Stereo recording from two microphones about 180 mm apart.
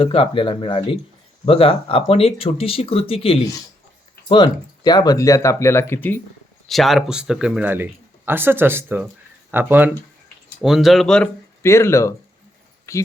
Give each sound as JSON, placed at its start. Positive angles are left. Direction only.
{"t": 0.0, "sound": "speech", "side_deg": 30}
{"t": 6.7, "sound": "speech", "side_deg": 0}
{"t": 11.6, "sound": "speech", "side_deg": 15}